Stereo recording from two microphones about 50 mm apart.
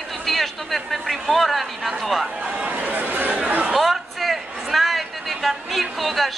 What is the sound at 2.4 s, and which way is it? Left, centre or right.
Chatter, right.